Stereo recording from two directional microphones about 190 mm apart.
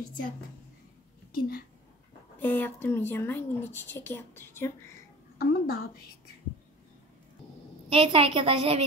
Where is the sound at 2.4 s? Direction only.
10° left (ahead or behind).